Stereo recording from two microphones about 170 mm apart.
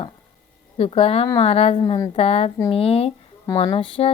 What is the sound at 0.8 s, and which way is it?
Speech, 35° left (ahead or behind).